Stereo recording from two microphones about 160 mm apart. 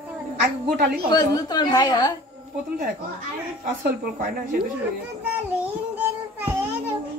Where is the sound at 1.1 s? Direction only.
25° left (ahead or behind).